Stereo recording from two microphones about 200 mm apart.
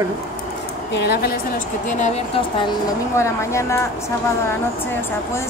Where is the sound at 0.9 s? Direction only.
55° left (ahead or behind).